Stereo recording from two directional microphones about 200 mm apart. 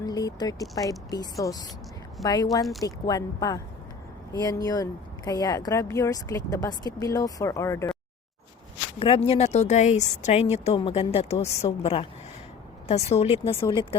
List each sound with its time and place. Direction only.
0.0 s a sound: 20° left (ahead or behind)
0.9 s a woman's voice: 20° left (ahead or behind)
9.0 s a woman's voice: 30° left (ahead or behind)